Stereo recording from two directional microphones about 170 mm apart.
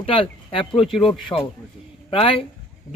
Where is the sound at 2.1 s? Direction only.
30° left (ahead or behind).